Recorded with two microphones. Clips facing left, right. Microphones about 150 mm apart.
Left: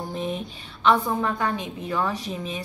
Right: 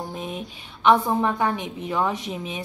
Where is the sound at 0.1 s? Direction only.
5° right (ahead or behind).